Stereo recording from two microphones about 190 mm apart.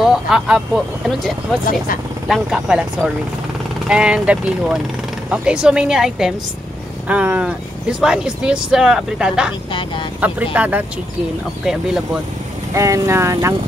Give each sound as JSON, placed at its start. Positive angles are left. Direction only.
{"t": 0.0, "sound": "speech", "side_deg": -5}
{"t": 9.7, "sound": "speech", "side_deg": 25}
{"t": 10.2, "sound": "speech", "side_deg": -10}
{"t": 12.7, "sound": "speech", "side_deg": -15}